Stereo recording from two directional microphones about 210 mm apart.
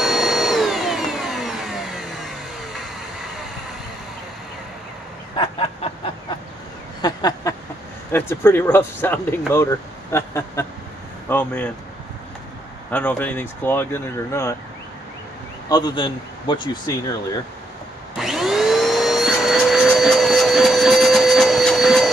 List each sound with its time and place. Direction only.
0.0 s vacuum cleaner: centre (ahead or behind)
5.3 s a sound: 25° left (ahead or behind)
7.0 s a sound: 20° left (ahead or behind)
8.1 s speech: 10° left (ahead or behind)
12.9 s speech: 5° left (ahead or behind)
15.7 s speech: 20° left (ahead or behind)
18.1 s vacuum cleaner: centre (ahead or behind)